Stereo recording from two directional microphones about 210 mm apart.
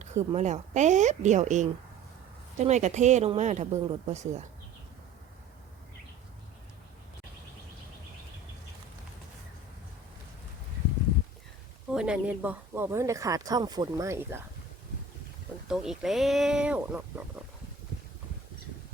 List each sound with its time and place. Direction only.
0.0 s speech: 30° right (ahead or behind)
11.9 s speech: 5° right (ahead or behind)
15.6 s speech: centre (ahead or behind)